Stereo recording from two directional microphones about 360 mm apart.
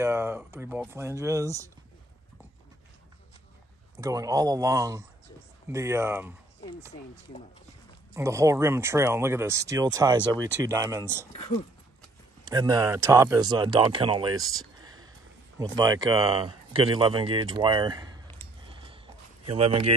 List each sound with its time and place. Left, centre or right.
0.0 s speech: centre
4.0 s speech: centre
8.1 s speech: centre
12.4 s speech: centre
14.8 s a sound: centre
15.7 s speech: centre
19.4 s speech: centre